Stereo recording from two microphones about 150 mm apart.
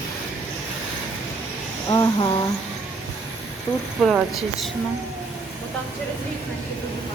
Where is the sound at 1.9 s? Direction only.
30° left (ahead or behind).